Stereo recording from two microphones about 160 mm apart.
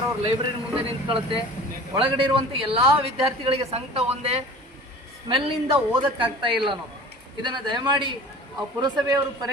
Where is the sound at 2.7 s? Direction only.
35° right (ahead or behind).